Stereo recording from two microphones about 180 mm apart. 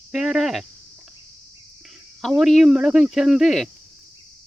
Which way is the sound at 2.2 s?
Centre (ahead or behind).